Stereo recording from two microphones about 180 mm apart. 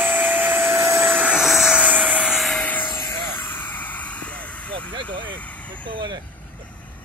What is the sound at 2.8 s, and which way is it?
Vehicle, 20° left (ahead or behind).